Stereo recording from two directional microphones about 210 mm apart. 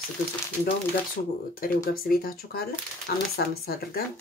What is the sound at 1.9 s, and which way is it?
Speech, 45° left (ahead or behind).